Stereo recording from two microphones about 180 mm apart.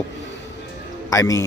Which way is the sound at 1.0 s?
20° left (ahead or behind).